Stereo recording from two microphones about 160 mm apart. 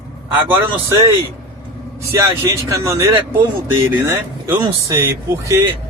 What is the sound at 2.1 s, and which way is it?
Speech, 20° right (ahead or behind).